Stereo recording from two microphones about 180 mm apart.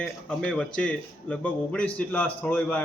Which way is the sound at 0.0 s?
5° left (ahead or behind).